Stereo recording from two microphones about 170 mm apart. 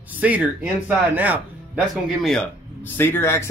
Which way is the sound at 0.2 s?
10° right (ahead or behind).